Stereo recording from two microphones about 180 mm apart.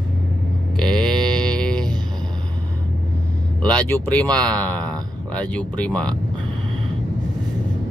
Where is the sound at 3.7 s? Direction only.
10° left (ahead or behind).